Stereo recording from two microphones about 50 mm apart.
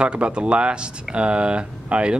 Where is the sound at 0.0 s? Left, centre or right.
Right.